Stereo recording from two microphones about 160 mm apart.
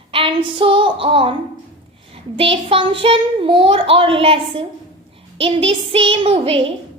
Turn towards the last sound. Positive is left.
turn(degrees=-35)  # may be behind; listen again after turning